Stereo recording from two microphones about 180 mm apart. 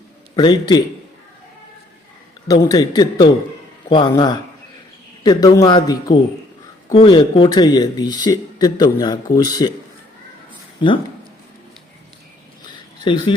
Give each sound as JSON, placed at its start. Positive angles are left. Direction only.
{"t": 0.3, "sound": "speech", "side_deg": 25}
{"t": 2.5, "sound": "speech", "side_deg": 20}
{"t": 13.1, "sound": "speech", "side_deg": 25}